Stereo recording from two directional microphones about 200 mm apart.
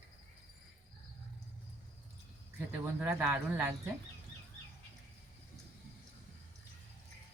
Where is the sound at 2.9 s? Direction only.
5° right (ahead or behind).